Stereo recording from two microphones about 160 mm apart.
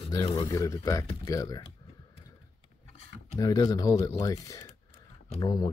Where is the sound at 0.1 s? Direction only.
25° left (ahead or behind).